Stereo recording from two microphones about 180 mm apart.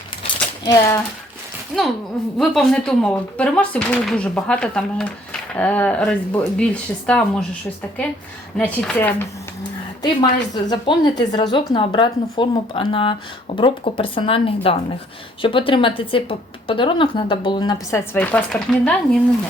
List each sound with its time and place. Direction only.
0.2 s a sound: 25° left (ahead or behind)
1.7 s speech: 5° right (ahead or behind)
8.5 s speech: 5° left (ahead or behind)
10.0 s a woman's voice: 25° left (ahead or behind)
18.1 s speech: 10° left (ahead or behind)